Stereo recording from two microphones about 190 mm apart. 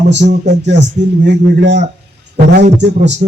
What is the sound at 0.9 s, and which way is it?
A man's voice, 65° right (ahead or behind).